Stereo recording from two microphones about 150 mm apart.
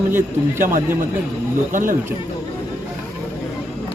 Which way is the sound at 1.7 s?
65° right (ahead or behind).